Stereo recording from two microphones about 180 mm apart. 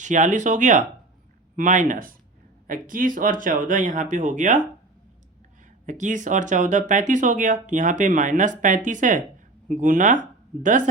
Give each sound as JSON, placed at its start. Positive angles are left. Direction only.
{"t": 0.0, "sound": "speech", "side_deg": -45}
{"t": 5.8, "sound": "speech", "side_deg": -45}